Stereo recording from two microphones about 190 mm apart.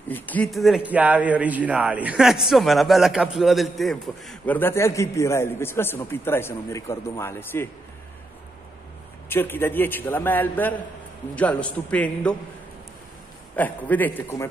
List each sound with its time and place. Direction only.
0.1 s a man's voice: 10° left (ahead or behind)
9.3 s a man's voice: 10° left (ahead or behind)
13.6 s a man's voice: 10° left (ahead or behind)